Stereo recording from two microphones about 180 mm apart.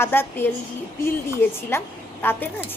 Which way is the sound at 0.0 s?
10° left (ahead or behind).